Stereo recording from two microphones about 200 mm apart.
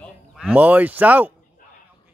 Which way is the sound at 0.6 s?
10° right (ahead or behind).